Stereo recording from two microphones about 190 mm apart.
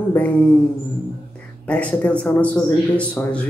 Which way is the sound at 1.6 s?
5° left (ahead or behind).